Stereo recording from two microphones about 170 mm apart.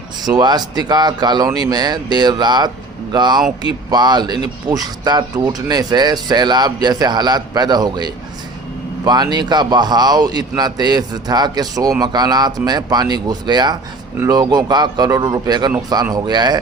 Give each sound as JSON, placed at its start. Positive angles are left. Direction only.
{"t": 0.3, "sound": "a man's voice", "side_deg": -25}